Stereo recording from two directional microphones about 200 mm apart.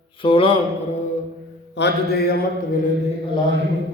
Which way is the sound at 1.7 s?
55° left (ahead or behind).